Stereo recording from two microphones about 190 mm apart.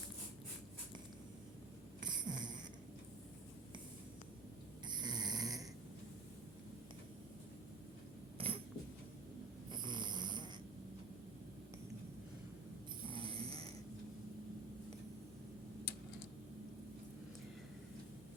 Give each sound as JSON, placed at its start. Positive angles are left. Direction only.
{"t": 2.0, "sound": "a sound", "side_deg": -20}
{"t": 4.9, "sound": "snoring", "side_deg": -20}
{"t": 8.4, "sound": "mechanisms", "side_deg": -30}
{"t": 9.7, "sound": "snoring", "side_deg": -25}
{"t": 13.1, "sound": "snoring", "side_deg": -30}